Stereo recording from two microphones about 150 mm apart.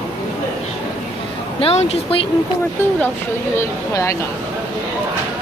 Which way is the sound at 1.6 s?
40° left (ahead or behind).